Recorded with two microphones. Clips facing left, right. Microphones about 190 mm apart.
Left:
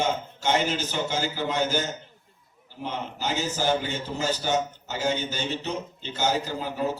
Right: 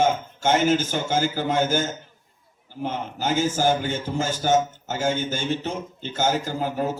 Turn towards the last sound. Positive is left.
turn(degrees=-50)  # may be behind; listen again after turning